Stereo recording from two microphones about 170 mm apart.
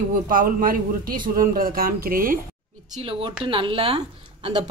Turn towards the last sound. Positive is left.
turn(degrees=-35)  # may be behind; listen again after turning